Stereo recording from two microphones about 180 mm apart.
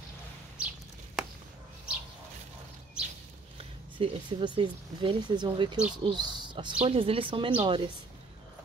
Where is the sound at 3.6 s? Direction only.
30° right (ahead or behind).